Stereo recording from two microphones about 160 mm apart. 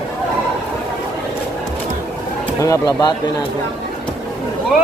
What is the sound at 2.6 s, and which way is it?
Speech, 20° left (ahead or behind).